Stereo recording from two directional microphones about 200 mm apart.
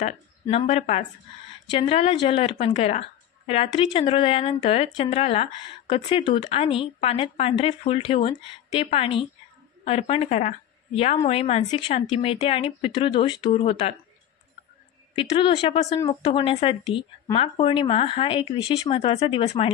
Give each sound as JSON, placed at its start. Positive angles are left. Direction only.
{"t": 0.0, "sound": "speech", "side_deg": 30}
{"t": 15.1, "sound": "speech", "side_deg": 25}